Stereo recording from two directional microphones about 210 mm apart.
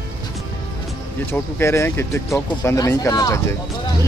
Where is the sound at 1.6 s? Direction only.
10° left (ahead or behind).